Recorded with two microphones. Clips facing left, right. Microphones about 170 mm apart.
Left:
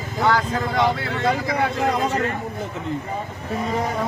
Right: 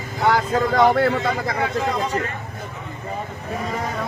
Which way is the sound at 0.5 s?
45° right (ahead or behind).